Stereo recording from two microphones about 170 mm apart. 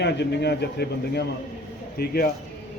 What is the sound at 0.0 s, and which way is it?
Speech, 85° left.